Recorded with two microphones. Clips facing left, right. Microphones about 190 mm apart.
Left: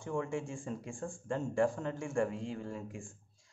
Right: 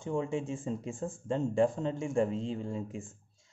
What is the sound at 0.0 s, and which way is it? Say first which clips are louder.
Speech: right 3 dB; 20° right (ahead or behind).